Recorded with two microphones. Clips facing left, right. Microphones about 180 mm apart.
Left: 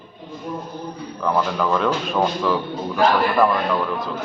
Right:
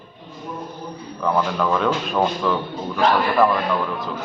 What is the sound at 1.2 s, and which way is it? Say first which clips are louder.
Speech: even; centre (ahead or behind).